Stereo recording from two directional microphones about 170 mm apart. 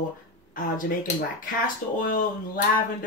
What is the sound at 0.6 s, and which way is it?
Speech, 55° left (ahead or behind).